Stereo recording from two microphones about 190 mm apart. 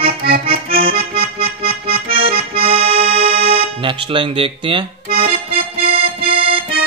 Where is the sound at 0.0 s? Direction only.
50° right (ahead or behind).